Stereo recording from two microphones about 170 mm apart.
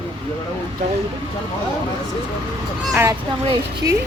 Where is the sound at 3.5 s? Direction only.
20° right (ahead or behind).